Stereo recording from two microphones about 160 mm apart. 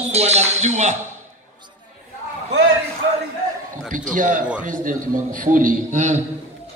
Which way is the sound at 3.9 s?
55° right (ahead or behind).